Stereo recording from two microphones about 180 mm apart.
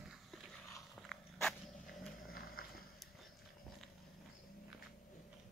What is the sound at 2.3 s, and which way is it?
Horse, 55° left (ahead or behind).